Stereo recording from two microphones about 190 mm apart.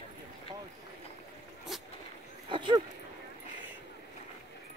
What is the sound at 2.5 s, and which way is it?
Speech, 25° right (ahead or behind).